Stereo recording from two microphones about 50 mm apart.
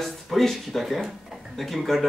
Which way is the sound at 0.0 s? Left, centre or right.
Centre.